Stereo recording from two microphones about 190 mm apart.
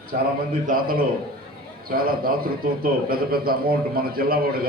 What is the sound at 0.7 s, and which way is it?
A man's voice, 50° right (ahead or behind).